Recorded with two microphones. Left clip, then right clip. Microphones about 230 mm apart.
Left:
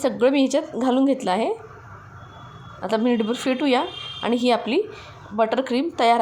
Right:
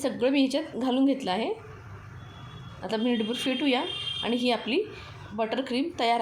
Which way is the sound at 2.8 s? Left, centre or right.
Centre.